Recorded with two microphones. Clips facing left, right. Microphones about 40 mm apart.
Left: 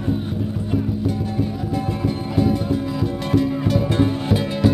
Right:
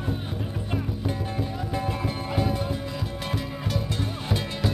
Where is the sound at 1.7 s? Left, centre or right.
Centre.